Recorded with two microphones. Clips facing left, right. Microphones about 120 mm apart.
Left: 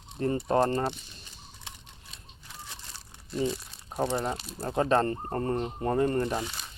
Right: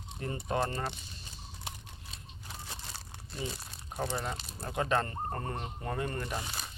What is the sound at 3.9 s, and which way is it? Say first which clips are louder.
Speech: left 6 dB; 20° left (ahead or behind).